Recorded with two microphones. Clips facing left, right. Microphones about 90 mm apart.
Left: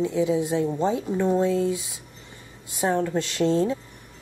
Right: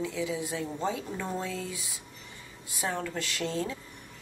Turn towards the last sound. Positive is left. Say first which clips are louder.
# left 10 dB
turn(degrees=30)  # may be behind; listen again after turning